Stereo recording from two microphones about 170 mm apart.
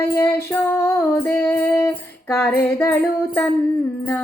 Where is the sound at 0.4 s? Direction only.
15° left (ahead or behind).